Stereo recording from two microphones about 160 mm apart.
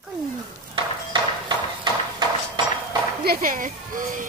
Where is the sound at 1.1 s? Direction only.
35° right (ahead or behind).